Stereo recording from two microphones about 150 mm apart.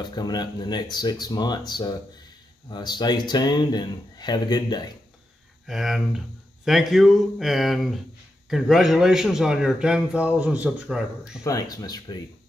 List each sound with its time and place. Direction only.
0.0 s speech: 30° left (ahead or behind)
5.7 s a man's voice: centre (ahead or behind)
11.4 s speech: 25° left (ahead or behind)